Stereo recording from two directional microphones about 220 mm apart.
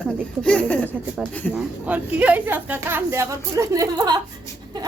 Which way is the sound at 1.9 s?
5° right (ahead or behind).